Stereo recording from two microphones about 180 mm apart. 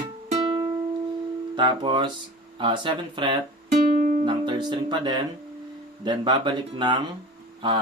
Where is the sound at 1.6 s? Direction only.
25° right (ahead or behind).